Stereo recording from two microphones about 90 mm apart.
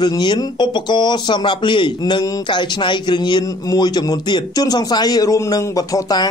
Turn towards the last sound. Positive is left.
turn(degrees=45)  # may be behind; listen again after turning